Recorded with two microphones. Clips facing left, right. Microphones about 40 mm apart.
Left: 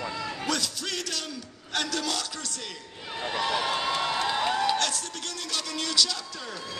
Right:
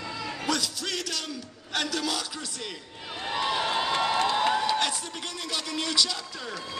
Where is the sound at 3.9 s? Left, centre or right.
Centre.